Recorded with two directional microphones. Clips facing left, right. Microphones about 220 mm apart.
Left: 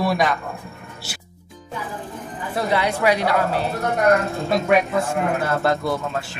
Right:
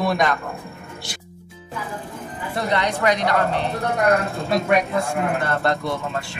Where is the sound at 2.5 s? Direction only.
5° left (ahead or behind).